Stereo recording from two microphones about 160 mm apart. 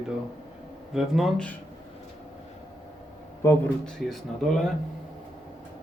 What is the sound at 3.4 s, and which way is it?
Speech, 20° left (ahead or behind).